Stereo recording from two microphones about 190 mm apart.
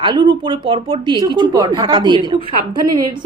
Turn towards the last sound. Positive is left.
turn(degrees=-20)  # may be behind; listen again after turning